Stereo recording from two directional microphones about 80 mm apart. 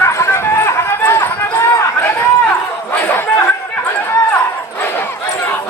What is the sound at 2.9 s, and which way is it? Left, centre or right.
Chatter, left.